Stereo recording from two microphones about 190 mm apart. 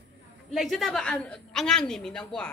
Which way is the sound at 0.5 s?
Centre (ahead or behind).